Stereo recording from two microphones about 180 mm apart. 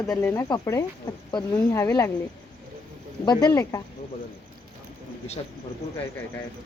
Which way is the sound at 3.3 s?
20° left (ahead or behind).